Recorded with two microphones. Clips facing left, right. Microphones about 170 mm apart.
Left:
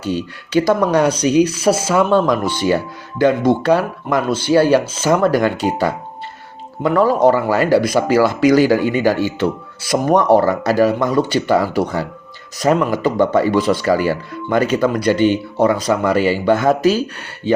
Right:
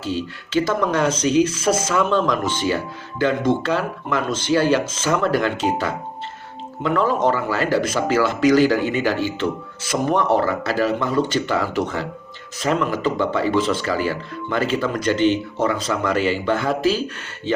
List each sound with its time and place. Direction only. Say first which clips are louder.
0.6 s speech: left 6 dB; 40° left (ahead or behind)
1.0 s speech: left 4 dB; 15° left (ahead or behind)
1.5 s speech: left 4 dB; 35° left (ahead or behind)
4.3 s speech: left 5 dB; 10° left (ahead or behind)
4.5 s speech: left 5 dB; 40° left (ahead or behind)
15.1 s speech: left 1 dB; 10° left (ahead or behind)
15.5 s speech: left 6 dB; 35° left (ahead or behind)